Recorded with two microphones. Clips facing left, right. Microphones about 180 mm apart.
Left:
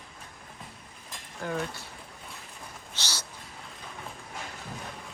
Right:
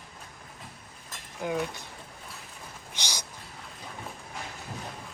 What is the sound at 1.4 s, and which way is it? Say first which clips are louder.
Speech: right 2 dB; 10° right (ahead or behind).